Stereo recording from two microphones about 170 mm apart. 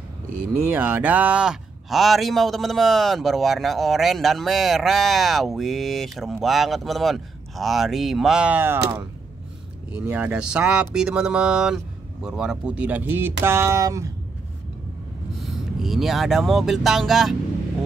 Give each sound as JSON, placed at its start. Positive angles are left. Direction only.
{"t": 0.7, "sound": "speech", "side_deg": -10}
{"t": 9.9, "sound": "speech", "side_deg": -10}
{"t": 15.4, "sound": "speech", "side_deg": 0}